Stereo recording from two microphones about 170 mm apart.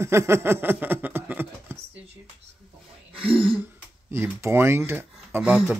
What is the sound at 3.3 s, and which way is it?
Throat clearing, 35° right (ahead or behind).